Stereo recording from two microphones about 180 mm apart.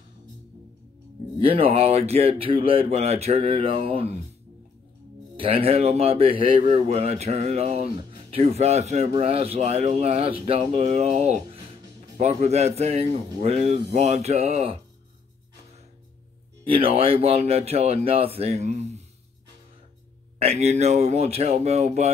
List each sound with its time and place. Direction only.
1.4 s speech: 30° right (ahead or behind)
5.4 s speech: 30° right (ahead or behind)
16.6 s speech: 30° right (ahead or behind)
20.3 s speech: 35° right (ahead or behind)